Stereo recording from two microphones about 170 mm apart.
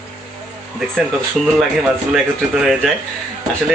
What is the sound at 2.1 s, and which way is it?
Speech, centre (ahead or behind).